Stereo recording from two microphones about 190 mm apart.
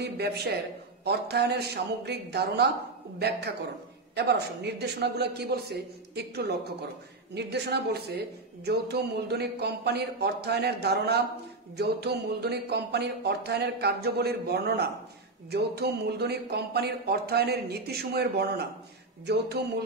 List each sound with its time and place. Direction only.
0.0 s speech: 60° right (ahead or behind)